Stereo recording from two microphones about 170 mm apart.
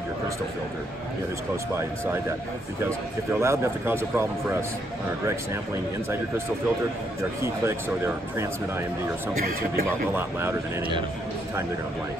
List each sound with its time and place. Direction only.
2.9 s a man's voice: 15° right (ahead or behind)
7.4 s a man's voice: 15° right (ahead or behind)